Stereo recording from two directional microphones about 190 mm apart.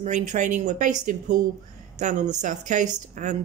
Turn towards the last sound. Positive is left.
turn(degrees=-40)  # may be behind; listen again after turning